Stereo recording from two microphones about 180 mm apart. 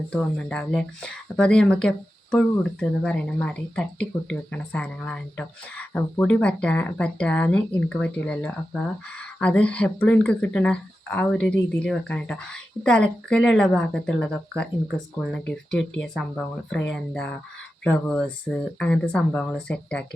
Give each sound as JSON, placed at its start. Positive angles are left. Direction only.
{"t": 0.1, "sound": "speech", "side_deg": 5}